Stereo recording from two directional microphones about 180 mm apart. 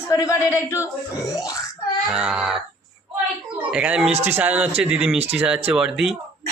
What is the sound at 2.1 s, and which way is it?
Speech, 5° right (ahead or behind).